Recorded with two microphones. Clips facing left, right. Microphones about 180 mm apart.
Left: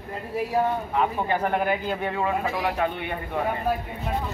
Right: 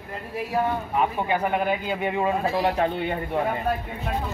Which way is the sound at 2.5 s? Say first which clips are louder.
Right 3 dB; 30° right (ahead or behind).